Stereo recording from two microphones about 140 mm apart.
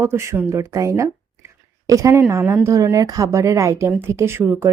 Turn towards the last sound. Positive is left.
turn(degrees=-20)  # may be behind; listen again after turning